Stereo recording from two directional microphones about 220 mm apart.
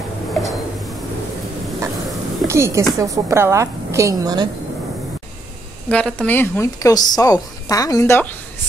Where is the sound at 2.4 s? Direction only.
15° right (ahead or behind).